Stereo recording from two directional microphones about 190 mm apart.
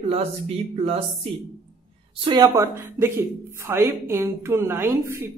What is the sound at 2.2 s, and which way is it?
A woman's voice, 20° right (ahead or behind).